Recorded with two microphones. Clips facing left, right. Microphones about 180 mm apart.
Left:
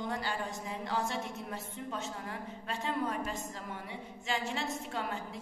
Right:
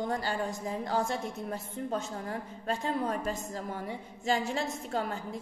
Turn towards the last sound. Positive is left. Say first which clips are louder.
# right 4 dB
turn(degrees=-40)  # may be behind; listen again after turning